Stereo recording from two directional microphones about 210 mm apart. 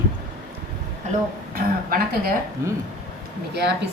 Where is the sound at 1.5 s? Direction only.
45° right (ahead or behind).